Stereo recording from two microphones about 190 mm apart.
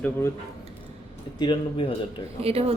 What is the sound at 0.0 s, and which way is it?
Speech, 15° left (ahead or behind).